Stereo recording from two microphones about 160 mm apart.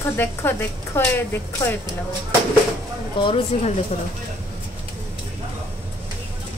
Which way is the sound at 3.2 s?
30° left (ahead or behind).